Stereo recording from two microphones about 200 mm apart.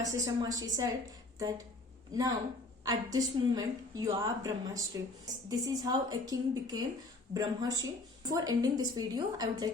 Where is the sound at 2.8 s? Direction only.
20° right (ahead or behind).